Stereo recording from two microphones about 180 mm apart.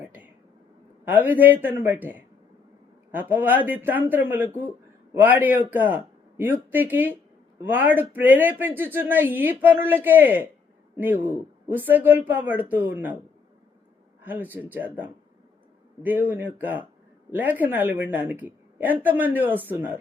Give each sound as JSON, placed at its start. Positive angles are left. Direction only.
{"t": 1.0, "sound": "a woman's voice", "side_deg": -10}
{"t": 14.2, "sound": "a sound", "side_deg": -10}
{"t": 14.5, "sound": "a woman's voice", "side_deg": -10}